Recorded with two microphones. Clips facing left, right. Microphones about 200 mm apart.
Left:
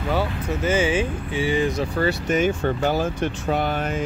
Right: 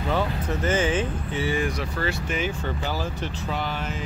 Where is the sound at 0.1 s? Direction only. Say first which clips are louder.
Left 2 dB; 10° left (ahead or behind); by 2.1 s 25° left (ahead or behind).